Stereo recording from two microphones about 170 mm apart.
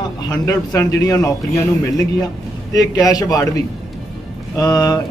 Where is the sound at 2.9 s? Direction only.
20° left (ahead or behind).